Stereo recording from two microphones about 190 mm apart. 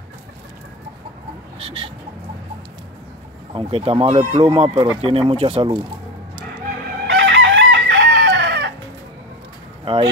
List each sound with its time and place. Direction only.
1.6 s speech: 30° right (ahead or behind)
3.5 s speech: 30° right (ahead or behind)
7.1 s chicken: 65° right (ahead or behind)
9.9 s speech: 30° right (ahead or behind)